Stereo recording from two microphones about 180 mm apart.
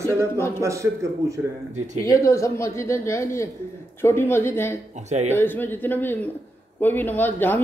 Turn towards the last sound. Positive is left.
turn(degrees=10)  # may be behind; listen again after turning